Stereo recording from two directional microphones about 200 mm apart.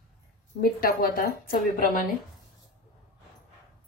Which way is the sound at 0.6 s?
50° left (ahead or behind).